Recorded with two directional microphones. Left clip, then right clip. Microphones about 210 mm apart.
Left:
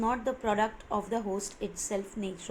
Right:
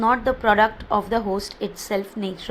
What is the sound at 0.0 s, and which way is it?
A woman's voice, 25° right (ahead or behind).